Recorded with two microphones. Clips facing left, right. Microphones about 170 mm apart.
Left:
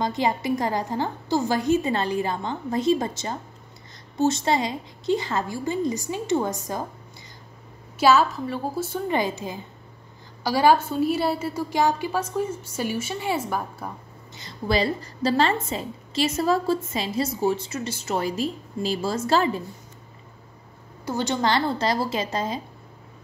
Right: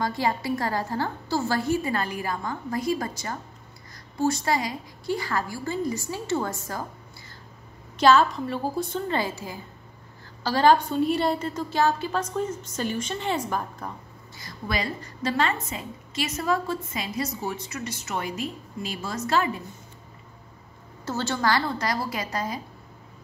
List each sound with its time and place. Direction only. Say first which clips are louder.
0.0 s a woman's voice: left 2 dB; 20° left (ahead or behind)
8.0 s a woman's voice: even; 5° left (ahead or behind)
10.4 s a woman's voice: left 1 dB; 10° left (ahead or behind)
14.3 s a woman's voice: left 6 dB; 25° left (ahead or behind)
21.0 s a woman's voice: left 2 dB; 15° left (ahead or behind)